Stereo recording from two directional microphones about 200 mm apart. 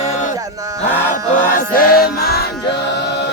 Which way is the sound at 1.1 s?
45° left (ahead or behind).